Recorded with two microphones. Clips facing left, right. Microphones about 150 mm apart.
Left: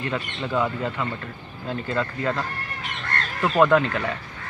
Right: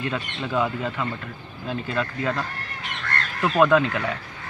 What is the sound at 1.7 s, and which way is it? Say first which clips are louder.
Speech: left 1 dB; 15° right (ahead or behind).